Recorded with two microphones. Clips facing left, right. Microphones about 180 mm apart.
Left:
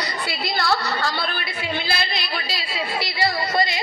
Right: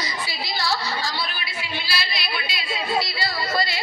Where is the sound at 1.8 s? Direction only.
50° left (ahead or behind).